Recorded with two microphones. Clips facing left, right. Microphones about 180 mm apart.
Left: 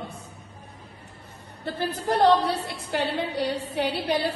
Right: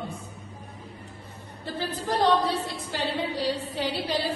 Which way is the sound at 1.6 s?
60° left (ahead or behind).